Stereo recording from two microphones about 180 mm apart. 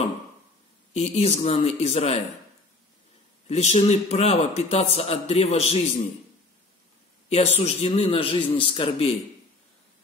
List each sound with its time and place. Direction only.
0.9 s a man's voice: 35° left (ahead or behind)
3.4 s a man's voice: 40° left (ahead or behind)
7.2 s a man's voice: 35° left (ahead or behind)